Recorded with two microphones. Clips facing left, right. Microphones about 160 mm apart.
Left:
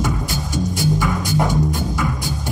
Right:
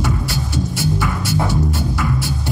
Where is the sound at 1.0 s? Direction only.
15° left (ahead or behind).